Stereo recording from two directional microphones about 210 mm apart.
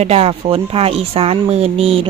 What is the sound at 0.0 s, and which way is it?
Speech, 30° right (ahead or behind).